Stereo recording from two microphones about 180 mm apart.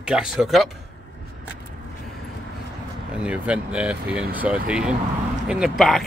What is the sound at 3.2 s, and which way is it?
Speech, 5° right (ahead or behind).